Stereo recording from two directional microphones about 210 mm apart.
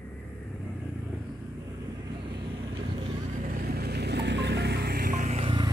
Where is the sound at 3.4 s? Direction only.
45° right (ahead or behind).